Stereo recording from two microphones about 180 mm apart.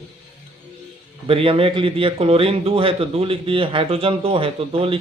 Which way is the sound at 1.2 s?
30° right (ahead or behind).